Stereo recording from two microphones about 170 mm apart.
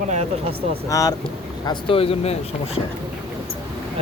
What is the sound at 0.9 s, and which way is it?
Speech, 20° left (ahead or behind).